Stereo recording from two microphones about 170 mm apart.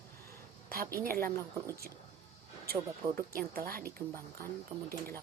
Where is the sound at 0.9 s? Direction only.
60° right (ahead or behind).